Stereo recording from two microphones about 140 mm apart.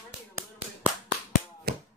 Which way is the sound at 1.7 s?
90° right.